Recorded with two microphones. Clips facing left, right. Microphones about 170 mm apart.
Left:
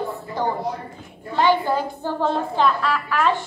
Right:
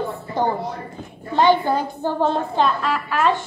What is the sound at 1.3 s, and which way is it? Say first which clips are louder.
A woman's voice: right 2 dB; 20° right (ahead or behind).